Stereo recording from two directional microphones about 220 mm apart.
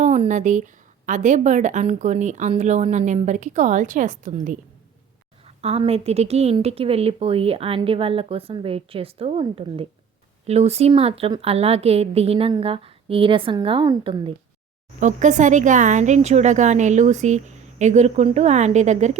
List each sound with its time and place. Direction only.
0.0 s a woman's voice: 30° right (ahead or behind)
5.6 s a woman's voice: 25° right (ahead or behind)
15.0 s a woman's voice: 35° right (ahead or behind)